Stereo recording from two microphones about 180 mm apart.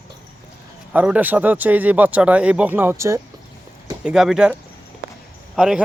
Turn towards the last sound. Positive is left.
turn(degrees=-5)  # may be behind; listen again after turning